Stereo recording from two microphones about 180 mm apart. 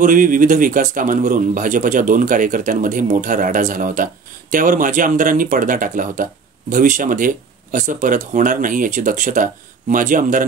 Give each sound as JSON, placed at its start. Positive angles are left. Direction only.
{"t": 0.0, "sound": "a man's voice", "side_deg": -45}